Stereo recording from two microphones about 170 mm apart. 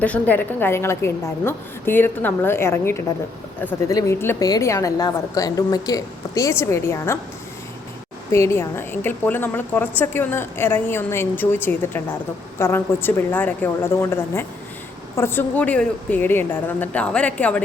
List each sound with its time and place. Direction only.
0.0 s a woman's voice: 10° left (ahead or behind)
8.3 s a woman's voice: 15° left (ahead or behind)